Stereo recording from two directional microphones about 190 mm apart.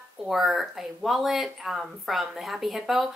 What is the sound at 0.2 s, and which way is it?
A woman's voice, centre (ahead or behind).